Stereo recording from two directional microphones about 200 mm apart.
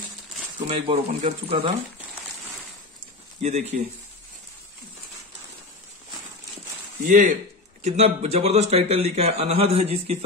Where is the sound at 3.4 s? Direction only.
35° right (ahead or behind).